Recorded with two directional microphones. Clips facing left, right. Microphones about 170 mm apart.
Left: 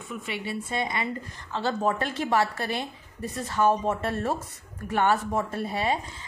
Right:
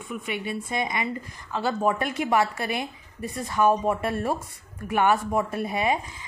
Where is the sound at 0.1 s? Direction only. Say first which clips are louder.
Right 2 dB; 15° right (ahead or behind).